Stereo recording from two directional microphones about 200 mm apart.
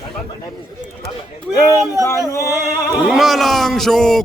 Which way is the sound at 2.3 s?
15° left (ahead or behind).